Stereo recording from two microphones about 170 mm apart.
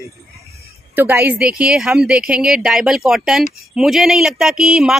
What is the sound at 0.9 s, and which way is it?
A woman's voice, 10° right (ahead or behind).